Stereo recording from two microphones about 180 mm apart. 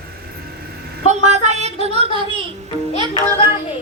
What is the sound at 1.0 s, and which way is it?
Speech, 40° right (ahead or behind).